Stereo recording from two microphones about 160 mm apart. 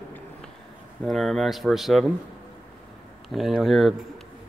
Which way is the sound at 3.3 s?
Centre (ahead or behind).